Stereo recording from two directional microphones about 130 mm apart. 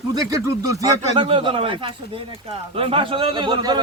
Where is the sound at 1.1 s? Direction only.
40° right (ahead or behind).